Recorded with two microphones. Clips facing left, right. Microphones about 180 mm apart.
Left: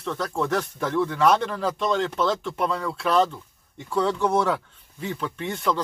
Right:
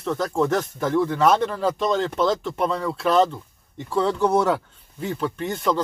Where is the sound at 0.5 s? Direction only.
30° right (ahead or behind).